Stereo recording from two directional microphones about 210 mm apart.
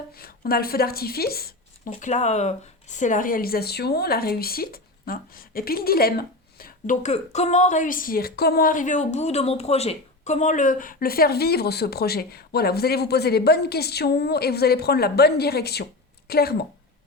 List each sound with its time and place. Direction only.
0.1 s a woman's voice: 45° left (ahead or behind)
1.9 s speech: 35° left (ahead or behind)